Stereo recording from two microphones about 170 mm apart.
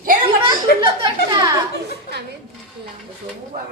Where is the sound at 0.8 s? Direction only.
30° right (ahead or behind).